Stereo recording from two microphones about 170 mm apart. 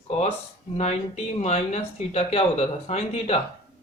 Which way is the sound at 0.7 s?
40° left (ahead or behind).